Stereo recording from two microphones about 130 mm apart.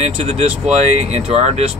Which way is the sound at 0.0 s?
55° right (ahead or behind).